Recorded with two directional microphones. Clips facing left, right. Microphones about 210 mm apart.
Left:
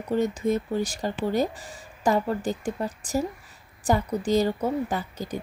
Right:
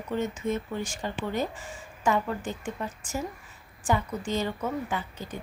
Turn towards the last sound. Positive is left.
turn(degrees=40)  # may be behind; listen again after turning